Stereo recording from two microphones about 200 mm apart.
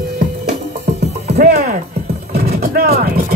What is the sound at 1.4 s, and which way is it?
Speech, 50° right (ahead or behind).